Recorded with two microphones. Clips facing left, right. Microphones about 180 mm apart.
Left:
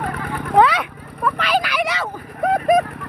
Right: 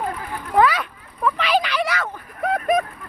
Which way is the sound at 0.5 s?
70° left (ahead or behind).